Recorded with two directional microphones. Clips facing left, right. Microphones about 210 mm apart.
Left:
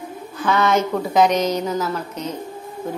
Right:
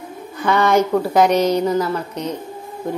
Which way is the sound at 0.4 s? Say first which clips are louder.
Right 3 dB; 10° right (ahead or behind).